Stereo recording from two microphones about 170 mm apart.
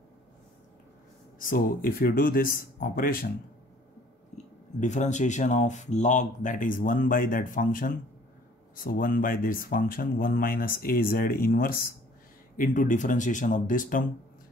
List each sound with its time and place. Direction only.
1.4 s speech: 55° left (ahead or behind)
4.7 s speech: 45° left (ahead or behind)